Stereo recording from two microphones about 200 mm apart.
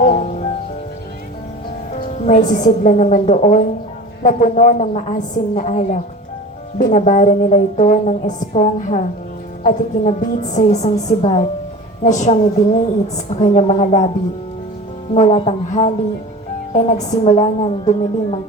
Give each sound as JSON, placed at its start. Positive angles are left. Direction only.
{"t": 0.0, "sound": "music", "side_deg": 35}
{"t": 1.9, "sound": "a woman's voice", "side_deg": 35}
{"t": 15.1, "sound": "a woman's voice", "side_deg": 30}